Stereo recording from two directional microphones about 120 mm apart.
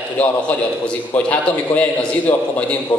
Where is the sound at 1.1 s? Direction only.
15° left (ahead or behind).